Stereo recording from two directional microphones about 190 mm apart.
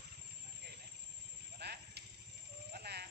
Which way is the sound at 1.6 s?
60° right (ahead or behind).